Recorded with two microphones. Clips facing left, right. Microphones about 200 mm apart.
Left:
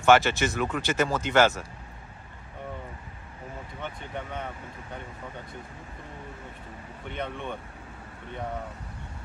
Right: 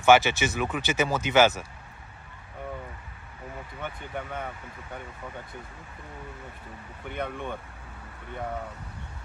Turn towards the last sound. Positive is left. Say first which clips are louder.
# right 1 dB
turn(degrees=-5)  # may be behind; listen again after turning